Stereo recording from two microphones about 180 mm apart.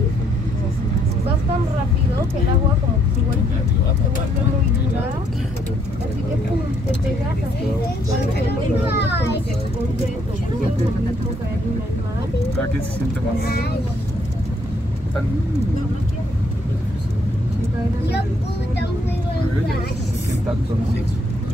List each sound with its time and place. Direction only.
8.9 s a child's voice: 70° left (ahead or behind)